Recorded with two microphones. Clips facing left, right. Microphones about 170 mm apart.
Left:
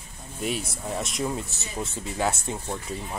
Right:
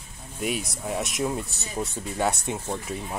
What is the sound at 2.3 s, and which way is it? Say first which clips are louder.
Speech: right 2 dB; 15° right (ahead or behind).